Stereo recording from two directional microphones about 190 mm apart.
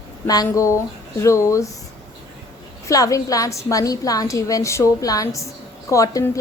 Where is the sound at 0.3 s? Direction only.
20° left (ahead or behind).